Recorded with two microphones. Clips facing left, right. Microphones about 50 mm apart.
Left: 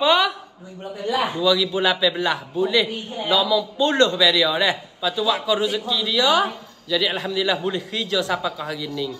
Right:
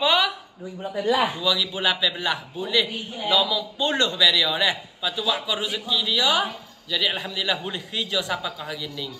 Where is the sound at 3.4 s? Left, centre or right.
Centre.